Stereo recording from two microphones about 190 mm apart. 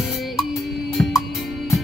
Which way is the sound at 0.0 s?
Centre (ahead or behind).